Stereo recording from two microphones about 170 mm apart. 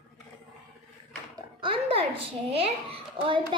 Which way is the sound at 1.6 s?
35° right (ahead or behind).